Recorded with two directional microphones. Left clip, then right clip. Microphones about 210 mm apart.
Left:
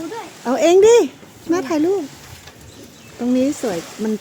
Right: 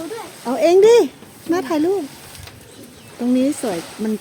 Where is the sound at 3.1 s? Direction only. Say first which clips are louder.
Even; centre (ahead or behind).